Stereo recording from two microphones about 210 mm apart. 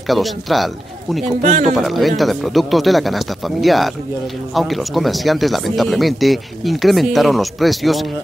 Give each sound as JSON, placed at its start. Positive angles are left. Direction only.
{"t": 0.1, "sound": "speech", "side_deg": 0}
{"t": 1.4, "sound": "speech", "side_deg": -35}
{"t": 1.8, "sound": "speech", "side_deg": 0}